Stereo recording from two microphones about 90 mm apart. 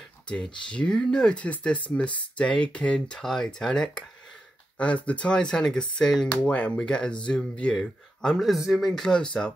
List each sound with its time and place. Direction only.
0.3 s speech: 10° left (ahead or behind)